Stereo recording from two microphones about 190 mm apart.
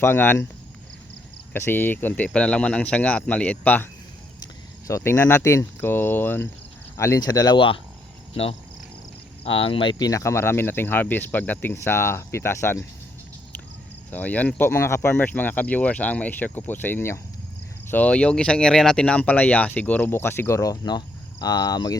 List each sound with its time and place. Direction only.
0.0 s speech: 10° left (ahead or behind)
1.5 s speech: 10° left (ahead or behind)
4.9 s speech: 15° left (ahead or behind)
14.1 s speech: 10° left (ahead or behind)